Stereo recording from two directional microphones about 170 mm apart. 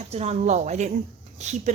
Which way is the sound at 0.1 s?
40° right (ahead or behind).